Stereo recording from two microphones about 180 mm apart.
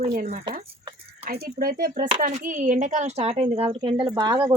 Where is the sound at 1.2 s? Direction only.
55° right (ahead or behind); by 4.4 s 25° right (ahead or behind).